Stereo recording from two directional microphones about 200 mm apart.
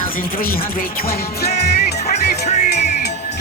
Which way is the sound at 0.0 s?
45° left (ahead or behind).